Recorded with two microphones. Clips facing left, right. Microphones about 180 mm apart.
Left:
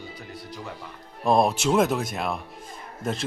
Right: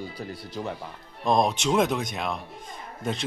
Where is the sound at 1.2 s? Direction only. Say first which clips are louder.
Left 2 dB; 5° left (ahead or behind).